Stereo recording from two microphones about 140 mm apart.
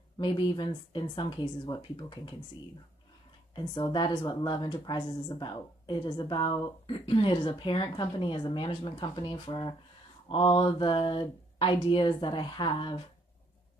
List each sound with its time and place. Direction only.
0.2 s speech: 30° left (ahead or behind)
3.9 s speech: 35° left (ahead or behind)